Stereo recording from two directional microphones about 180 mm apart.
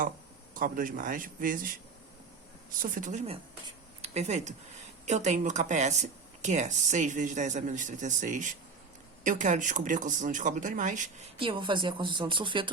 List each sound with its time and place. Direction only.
0.5 s speech: 50° right (ahead or behind)
2.8 s speech: 50° right (ahead or behind)
11.3 s speech: 30° right (ahead or behind)